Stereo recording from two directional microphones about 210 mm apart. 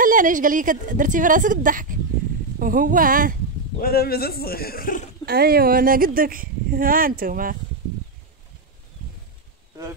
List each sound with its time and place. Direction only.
0.0 s a woman's voice: 40° right (ahead or behind)
3.8 s a man's voice: 45° left (ahead or behind)
5.2 s speech: 45° right (ahead or behind)